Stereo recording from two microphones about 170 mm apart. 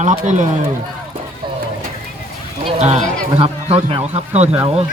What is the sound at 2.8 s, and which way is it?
A man's voice, 40° right (ahead or behind).